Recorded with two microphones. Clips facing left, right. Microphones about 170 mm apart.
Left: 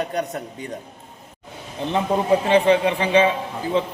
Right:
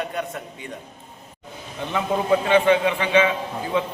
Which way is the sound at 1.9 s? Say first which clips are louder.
Left 2 dB; 30° left (ahead or behind).